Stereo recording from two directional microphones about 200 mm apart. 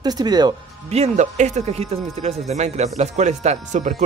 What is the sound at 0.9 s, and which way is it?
Speech, 35° right (ahead or behind).